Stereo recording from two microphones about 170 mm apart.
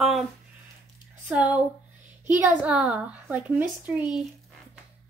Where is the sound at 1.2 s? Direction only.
10° right (ahead or behind).